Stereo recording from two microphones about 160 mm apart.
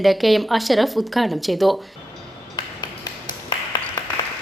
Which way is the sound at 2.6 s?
25° left (ahead or behind).